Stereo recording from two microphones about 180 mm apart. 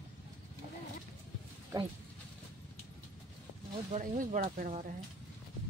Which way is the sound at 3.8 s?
45° right (ahead or behind).